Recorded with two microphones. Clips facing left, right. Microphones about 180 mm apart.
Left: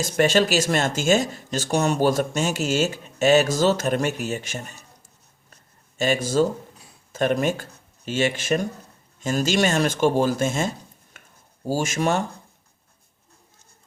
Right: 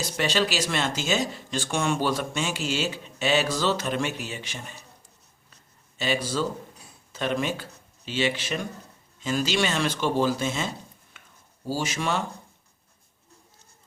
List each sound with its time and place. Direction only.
0.0 s speech: 45° left (ahead or behind)
6.0 s speech: 45° left (ahead or behind)
11.1 s a sound: 45° left (ahead or behind)
11.6 s speech: 45° left (ahead or behind)